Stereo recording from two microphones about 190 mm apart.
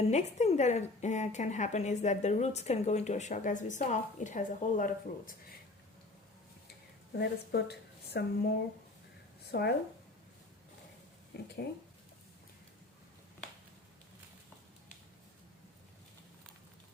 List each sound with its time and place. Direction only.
0.1 s a woman's voice: 35° left (ahead or behind)
7.2 s a woman's voice: 60° left (ahead or behind)
11.3 s a woman's voice: 55° left (ahead or behind)